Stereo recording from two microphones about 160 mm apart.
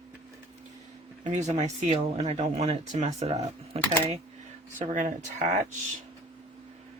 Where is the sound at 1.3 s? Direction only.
45° right (ahead or behind).